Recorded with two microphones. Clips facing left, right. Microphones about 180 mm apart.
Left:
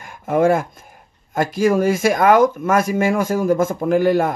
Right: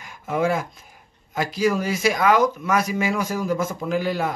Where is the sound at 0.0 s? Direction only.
50° left (ahead or behind).